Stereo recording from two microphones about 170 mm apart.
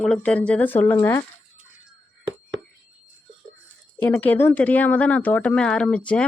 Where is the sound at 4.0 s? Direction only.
10° left (ahead or behind).